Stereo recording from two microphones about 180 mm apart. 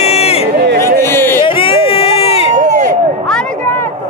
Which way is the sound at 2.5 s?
45° right (ahead or behind).